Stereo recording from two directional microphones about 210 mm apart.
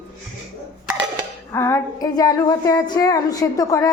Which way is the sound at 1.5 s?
10° left (ahead or behind).